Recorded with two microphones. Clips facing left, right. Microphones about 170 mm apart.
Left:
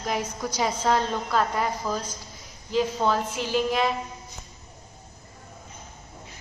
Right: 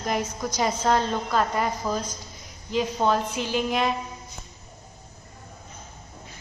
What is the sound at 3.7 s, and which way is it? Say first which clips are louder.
Speech: right 1 dB; centre (ahead or behind).